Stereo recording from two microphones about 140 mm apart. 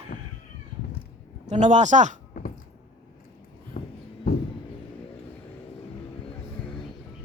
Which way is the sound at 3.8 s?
70° left (ahead or behind).